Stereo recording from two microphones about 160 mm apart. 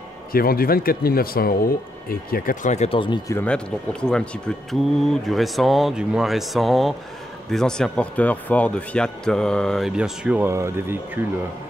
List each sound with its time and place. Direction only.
0.3 s speech: 65° left (ahead or behind); by 3.0 s 45° left (ahead or behind)
3.4 s speech: 5° left (ahead or behind); by 11.0 s 15° right (ahead or behind)